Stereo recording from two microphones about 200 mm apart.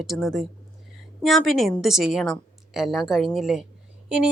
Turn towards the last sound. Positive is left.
turn(degrees=-5)  # may be behind; listen again after turning